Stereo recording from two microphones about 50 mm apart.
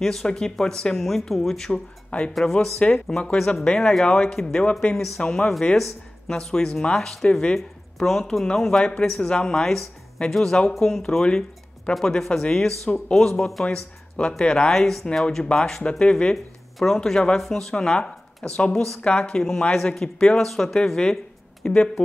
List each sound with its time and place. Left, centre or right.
0.0 s speech: centre
1.7 s speech: left
2.3 s speech: centre
11.2 s music: centre
11.9 s speech: centre
16.7 s speech: centre